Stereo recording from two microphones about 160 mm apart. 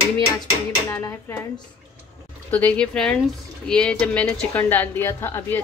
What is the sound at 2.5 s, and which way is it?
A woman's voice, 10° left (ahead or behind).